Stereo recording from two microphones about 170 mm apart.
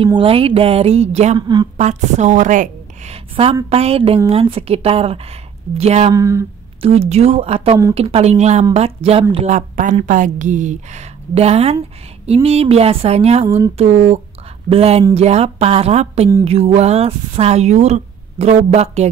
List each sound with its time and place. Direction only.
0.0 s a woman's voice: 35° right (ahead or behind)
6.1 s speech: 20° right (ahead or behind)
6.8 s a woman's voice: 40° right (ahead or behind)